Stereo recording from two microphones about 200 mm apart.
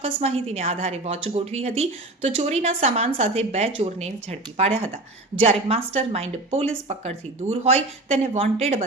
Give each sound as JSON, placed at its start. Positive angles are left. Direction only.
{"t": 0.0, "sound": "a woman's voice", "side_deg": -30}